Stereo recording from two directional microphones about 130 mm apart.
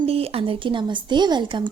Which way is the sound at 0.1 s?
50° right (ahead or behind).